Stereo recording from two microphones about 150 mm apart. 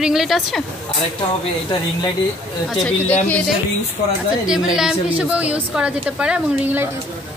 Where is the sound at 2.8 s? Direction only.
10° left (ahead or behind).